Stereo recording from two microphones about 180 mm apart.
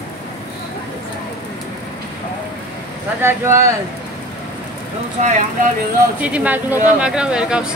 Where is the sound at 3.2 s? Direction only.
15° right (ahead or behind).